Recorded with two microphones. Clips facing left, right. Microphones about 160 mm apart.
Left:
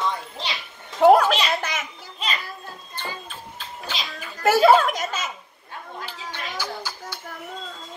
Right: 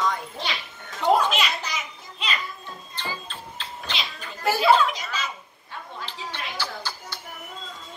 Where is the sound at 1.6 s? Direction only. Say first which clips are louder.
Left 3 dB; 50° left (ahead or behind).